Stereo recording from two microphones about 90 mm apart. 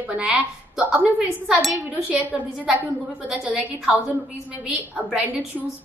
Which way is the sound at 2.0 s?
15° right (ahead or behind).